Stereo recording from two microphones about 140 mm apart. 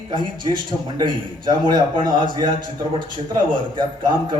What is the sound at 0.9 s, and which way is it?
A man's voice, 35° right (ahead or behind).